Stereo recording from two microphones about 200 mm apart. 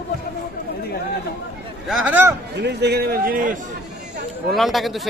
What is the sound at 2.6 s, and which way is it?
Speech, 55° right (ahead or behind).